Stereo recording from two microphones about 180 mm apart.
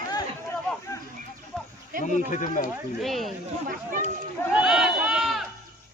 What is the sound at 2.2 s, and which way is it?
Speech, 45° left (ahead or behind).